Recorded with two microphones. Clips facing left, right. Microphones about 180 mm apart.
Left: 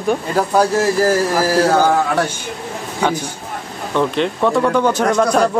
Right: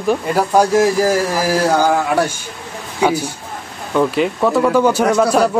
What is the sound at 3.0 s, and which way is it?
A man's voice, 10° right (ahead or behind).